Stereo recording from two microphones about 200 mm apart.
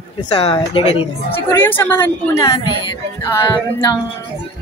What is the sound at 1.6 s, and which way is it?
A woman's voice, 10° left (ahead or behind).